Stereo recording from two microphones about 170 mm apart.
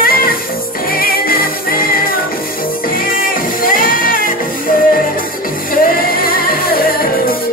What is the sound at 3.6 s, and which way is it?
Music, 55° left (ahead or behind).